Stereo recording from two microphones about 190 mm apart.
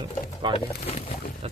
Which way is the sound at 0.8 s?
35° left (ahead or behind).